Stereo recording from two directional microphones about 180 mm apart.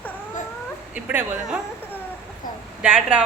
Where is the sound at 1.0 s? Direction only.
10° right (ahead or behind).